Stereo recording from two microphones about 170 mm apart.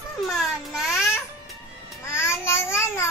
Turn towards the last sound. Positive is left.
turn(degrees=15)  # may be behind; listen again after turning